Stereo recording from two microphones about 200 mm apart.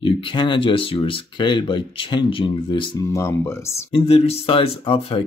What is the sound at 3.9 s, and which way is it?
Speech, 30° left (ahead or behind).